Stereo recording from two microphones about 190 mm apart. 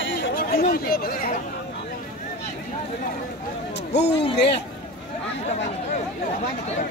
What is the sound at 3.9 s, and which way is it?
Speech, 65° left (ahead or behind).